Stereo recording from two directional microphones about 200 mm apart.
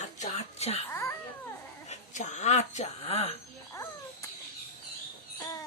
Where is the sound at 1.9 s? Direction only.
35° left (ahead or behind).